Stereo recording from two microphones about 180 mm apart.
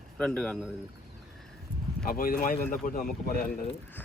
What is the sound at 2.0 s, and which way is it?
Speech, 55° left (ahead or behind).